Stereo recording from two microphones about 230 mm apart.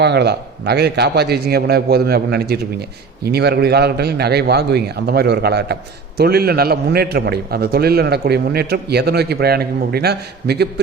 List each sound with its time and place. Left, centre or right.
0.0 s a man's voice: right